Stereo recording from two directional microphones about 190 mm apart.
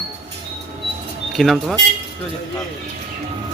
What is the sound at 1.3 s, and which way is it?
Speech, centre (ahead or behind).